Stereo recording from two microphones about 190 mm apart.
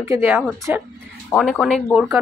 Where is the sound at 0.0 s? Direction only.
15° right (ahead or behind).